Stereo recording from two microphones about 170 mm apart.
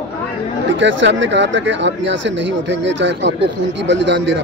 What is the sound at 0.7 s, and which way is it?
Speech, 90° right.